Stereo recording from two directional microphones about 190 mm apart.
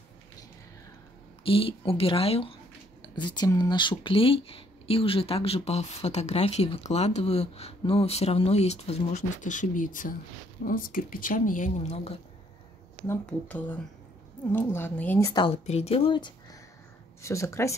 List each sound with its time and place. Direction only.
1.4 s speech: 30° left (ahead or behind)
13.0 s speech: 10° left (ahead or behind)